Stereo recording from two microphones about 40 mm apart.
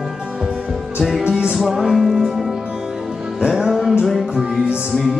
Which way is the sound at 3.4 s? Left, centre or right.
Centre.